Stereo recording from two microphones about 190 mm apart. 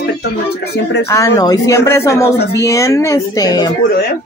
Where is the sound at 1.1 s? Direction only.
20° left (ahead or behind).